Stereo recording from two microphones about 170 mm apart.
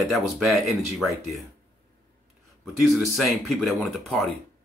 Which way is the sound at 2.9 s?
Centre (ahead or behind).